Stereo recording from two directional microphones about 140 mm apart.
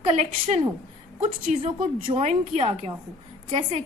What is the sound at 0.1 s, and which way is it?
Speech, 50° right (ahead or behind).